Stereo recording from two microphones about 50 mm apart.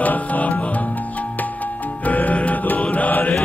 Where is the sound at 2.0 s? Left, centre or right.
Left.